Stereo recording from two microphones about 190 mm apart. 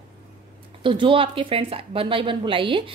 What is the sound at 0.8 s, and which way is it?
A woman's voice, 25° right (ahead or behind).